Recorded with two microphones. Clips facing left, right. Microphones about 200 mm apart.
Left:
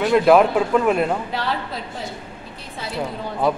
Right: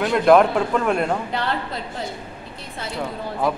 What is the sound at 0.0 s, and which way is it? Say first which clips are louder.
A man's voice: left 1 dB; centre (ahead or behind).